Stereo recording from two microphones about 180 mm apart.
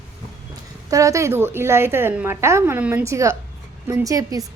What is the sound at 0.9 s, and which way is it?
A woman's voice, 20° right (ahead or behind).